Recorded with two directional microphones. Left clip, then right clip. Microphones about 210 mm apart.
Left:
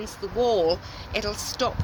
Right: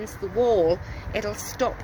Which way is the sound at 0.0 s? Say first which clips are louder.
Right 1 dB; 15° right (ahead or behind).